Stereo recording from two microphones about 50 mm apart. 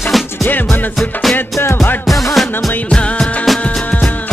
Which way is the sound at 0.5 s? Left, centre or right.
Left.